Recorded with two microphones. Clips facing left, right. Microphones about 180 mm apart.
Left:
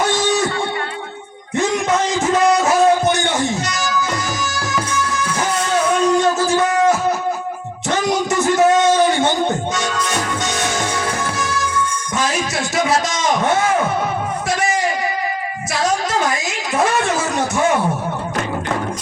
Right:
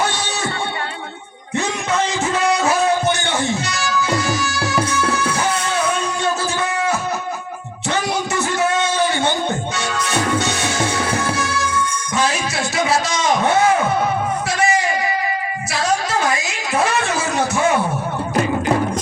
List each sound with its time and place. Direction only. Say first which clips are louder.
1.5 s music: left 3 dB; 45° left (ahead or behind)
6.1 s music: left 6 dB; 45° left (ahead or behind)
7.9 s a sound: left 3 dB; 45° left (ahead or behind)